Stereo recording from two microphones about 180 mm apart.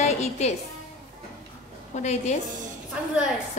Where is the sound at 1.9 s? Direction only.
40° left (ahead or behind).